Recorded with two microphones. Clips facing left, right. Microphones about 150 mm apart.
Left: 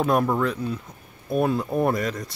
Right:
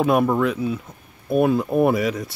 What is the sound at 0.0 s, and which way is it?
Speech, 5° right (ahead or behind).